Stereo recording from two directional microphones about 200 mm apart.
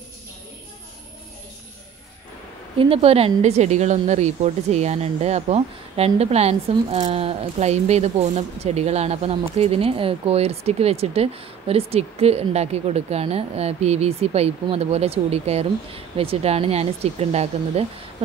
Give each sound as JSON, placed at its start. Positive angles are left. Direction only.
{"t": 2.8, "sound": "speech", "side_deg": -30}